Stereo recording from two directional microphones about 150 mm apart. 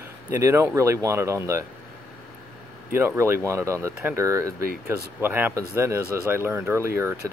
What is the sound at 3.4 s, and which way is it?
Speech, 20° right (ahead or behind).